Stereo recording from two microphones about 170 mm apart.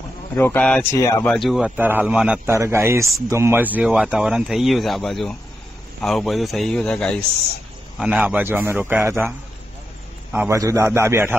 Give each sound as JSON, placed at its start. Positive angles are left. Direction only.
{"t": 0.4, "sound": "speech", "side_deg": 10}
{"t": 0.9, "sound": "speech", "side_deg": 20}
{"t": 1.3, "sound": "speech", "side_deg": 0}
{"t": 8.0, "sound": "a man's voice", "side_deg": -5}
{"t": 10.3, "sound": "a man's voice", "side_deg": -10}